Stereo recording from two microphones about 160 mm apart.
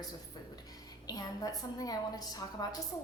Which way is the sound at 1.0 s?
25° left (ahead or behind).